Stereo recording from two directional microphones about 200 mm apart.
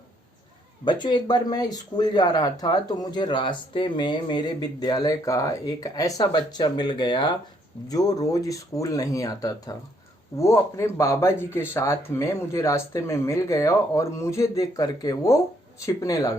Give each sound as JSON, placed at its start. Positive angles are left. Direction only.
{"t": 0.9, "sound": "speech", "side_deg": 20}